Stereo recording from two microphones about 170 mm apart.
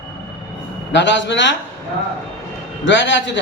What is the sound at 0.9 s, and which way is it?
Speech, 90° left.